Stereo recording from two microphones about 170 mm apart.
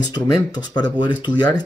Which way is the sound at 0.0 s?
25° left (ahead or behind).